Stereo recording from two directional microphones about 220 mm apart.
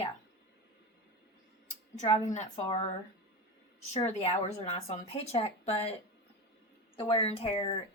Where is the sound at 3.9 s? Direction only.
30° left (ahead or behind).